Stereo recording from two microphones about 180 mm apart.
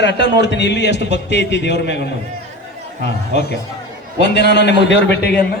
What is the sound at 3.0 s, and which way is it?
A man's voice, 70° left (ahead or behind).